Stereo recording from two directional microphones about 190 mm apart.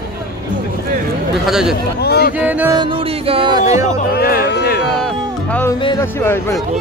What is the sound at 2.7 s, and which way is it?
Music, 25° right (ahead or behind).